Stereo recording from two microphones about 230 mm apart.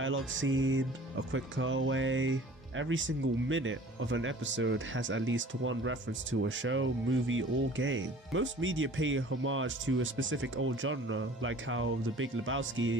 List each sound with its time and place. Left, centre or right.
0.0 s speech: right